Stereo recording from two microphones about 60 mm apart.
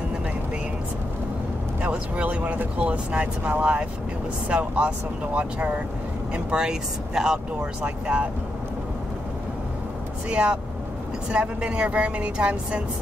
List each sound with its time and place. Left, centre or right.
1.8 s speech: right
7.8 s speech: right
10.3 s speech: right